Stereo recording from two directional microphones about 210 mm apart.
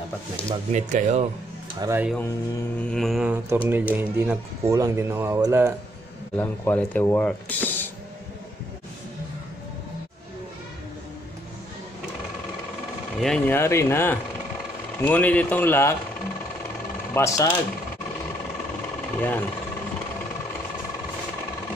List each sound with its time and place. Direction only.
0.7 s speech: 35° right (ahead or behind)
1.8 s speech: 10° right (ahead or behind)
2.9 s mantra: centre (ahead or behind)
3.6 s speech: 10° right (ahead or behind)
6.3 s speech: 10° left (ahead or behind)
13.2 s speech: 5° left (ahead or behind)
17.1 s speech: 10° left (ahead or behind)
19.1 s speech: 10° left (ahead or behind)